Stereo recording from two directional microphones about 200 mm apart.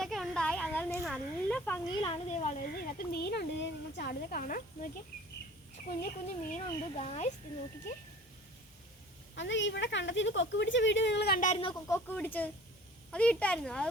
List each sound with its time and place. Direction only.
0.0 s speech: centre (ahead or behind)
2.0 s speech: 30° left (ahead or behind)
6.0 s speech: 40° left (ahead or behind)
9.3 s a woman's voice: 65° left (ahead or behind)
11.4 s speech: 30° left (ahead or behind)
11.9 s speech: 10° left (ahead or behind)